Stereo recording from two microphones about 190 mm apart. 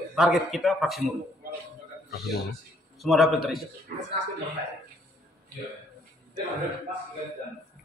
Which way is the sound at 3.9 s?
50° right (ahead or behind).